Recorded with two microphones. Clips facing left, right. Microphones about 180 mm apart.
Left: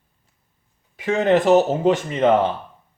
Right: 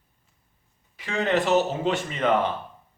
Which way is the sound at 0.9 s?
45° left (ahead or behind).